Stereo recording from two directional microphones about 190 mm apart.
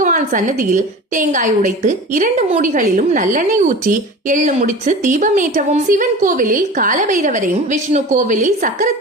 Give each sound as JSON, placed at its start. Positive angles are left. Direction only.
{"t": 0.0, "sound": "a woman's voice", "side_deg": -40}